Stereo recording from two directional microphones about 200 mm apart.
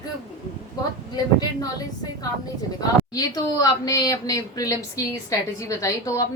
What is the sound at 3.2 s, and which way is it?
A woman's voice, 20° left (ahead or behind).